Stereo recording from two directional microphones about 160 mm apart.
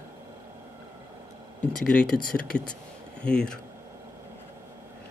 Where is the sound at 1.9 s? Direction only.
60° left (ahead or behind).